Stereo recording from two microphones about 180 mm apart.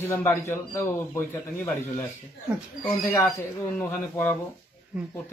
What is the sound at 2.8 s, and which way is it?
Speech, 10° left (ahead or behind).